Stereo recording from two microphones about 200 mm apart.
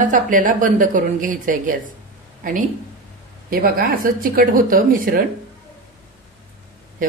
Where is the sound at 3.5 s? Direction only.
45° right (ahead or behind).